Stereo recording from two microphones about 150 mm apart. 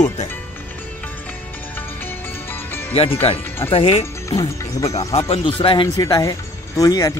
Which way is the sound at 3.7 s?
40° left (ahead or behind).